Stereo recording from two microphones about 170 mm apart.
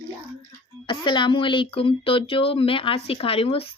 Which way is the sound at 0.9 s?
30° left (ahead or behind).